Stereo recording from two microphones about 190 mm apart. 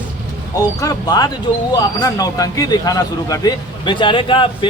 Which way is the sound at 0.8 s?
20° left (ahead or behind).